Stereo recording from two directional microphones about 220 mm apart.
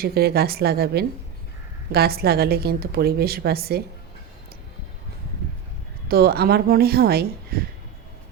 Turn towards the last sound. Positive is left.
turn(degrees=-45)  # may be behind; listen again after turning